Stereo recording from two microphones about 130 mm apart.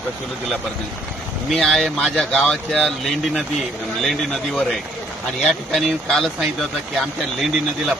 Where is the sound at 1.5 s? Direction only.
Centre (ahead or behind).